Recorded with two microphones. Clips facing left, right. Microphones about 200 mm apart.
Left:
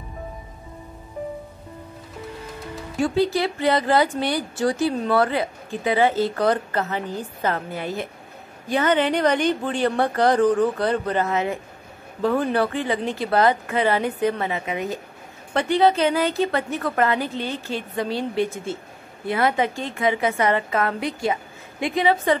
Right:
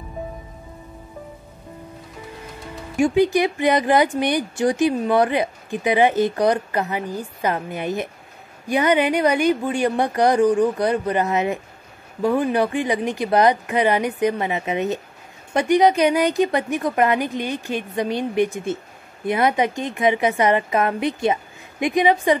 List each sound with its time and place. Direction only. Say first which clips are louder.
3.0 s speech: right 4 dB; 15° right (ahead or behind)